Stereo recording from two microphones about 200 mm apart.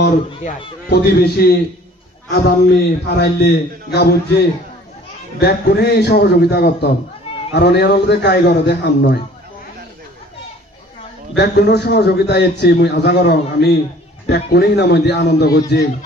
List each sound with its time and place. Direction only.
0.3 s speech: 25° left (ahead or behind)
0.8 s a man's voice: 55° left (ahead or behind)
5.4 s a man's voice: 55° left (ahead or behind)
11.3 s a man's voice: 55° left (ahead or behind)